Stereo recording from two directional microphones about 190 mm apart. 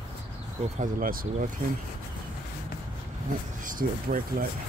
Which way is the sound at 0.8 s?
50° right (ahead or behind).